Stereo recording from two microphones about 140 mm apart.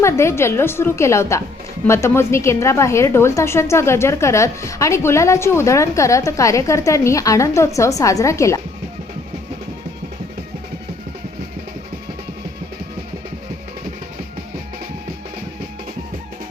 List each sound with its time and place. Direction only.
0.0 s a woman's voice: 20° left (ahead or behind)